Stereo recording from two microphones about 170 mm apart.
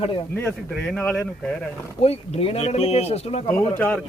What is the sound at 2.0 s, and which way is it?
Speech, 35° left (ahead or behind).